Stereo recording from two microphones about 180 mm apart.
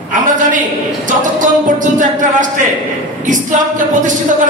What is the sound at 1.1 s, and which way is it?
Speech, 45° right (ahead or behind).